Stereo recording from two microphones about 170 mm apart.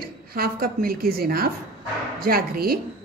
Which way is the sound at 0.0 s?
65° right (ahead or behind).